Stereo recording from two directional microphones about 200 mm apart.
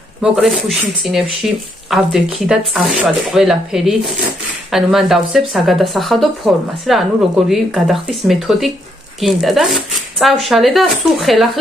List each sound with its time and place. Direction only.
0.2 s speech: centre (ahead or behind)